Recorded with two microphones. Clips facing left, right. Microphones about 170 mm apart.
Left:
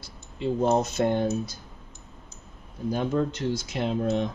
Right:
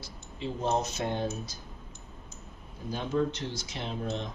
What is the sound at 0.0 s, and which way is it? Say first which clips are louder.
Speech: left 7 dB; 55° left (ahead or behind).